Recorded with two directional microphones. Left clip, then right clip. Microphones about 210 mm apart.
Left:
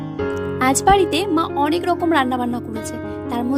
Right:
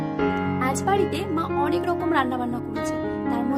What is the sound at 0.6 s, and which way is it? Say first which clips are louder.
Speech: left 9 dB; 45° left (ahead or behind).